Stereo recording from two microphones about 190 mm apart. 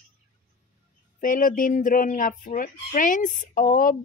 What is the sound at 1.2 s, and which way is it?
A woman's voice, 45° left (ahead or behind).